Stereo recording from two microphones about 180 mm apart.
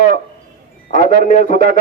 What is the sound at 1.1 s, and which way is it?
Speech, 45° left (ahead or behind).